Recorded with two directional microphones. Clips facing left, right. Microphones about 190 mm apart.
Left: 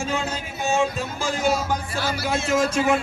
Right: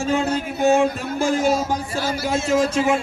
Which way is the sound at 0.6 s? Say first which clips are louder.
Right 5 dB; 60° right (ahead or behind).